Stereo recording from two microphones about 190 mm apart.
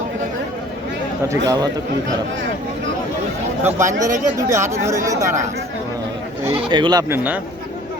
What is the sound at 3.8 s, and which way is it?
Speech, 40° right (ahead or behind).